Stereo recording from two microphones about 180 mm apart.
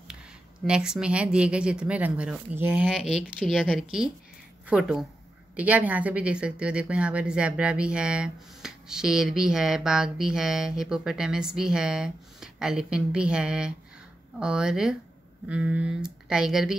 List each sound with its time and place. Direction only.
0.7 s speech: 5° right (ahead or behind)